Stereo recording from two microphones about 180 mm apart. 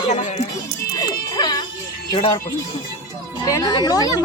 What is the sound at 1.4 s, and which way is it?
Music, 20° left (ahead or behind).